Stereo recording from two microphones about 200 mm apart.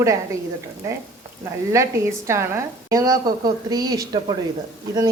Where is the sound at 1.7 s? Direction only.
15° right (ahead or behind).